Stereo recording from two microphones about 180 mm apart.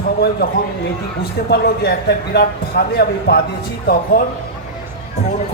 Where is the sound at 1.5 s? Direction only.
65° left (ahead or behind).